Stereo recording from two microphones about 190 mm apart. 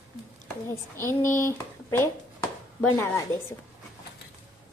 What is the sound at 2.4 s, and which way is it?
Chopping, 10° left (ahead or behind).